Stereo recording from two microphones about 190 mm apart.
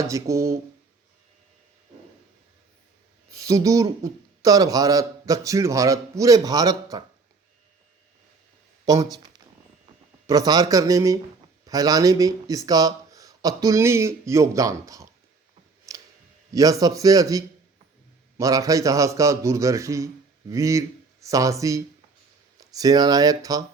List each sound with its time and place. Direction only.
0.0 s a man's voice: 15° right (ahead or behind)
3.2 s a man's voice: 15° right (ahead or behind)
10.2 s a man's voice: 20° right (ahead or behind)
15.9 s a sound: 20° right (ahead or behind)
16.5 s a man's voice: 20° right (ahead or behind)